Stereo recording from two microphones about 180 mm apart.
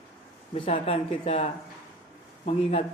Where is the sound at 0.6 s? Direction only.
30° left (ahead or behind).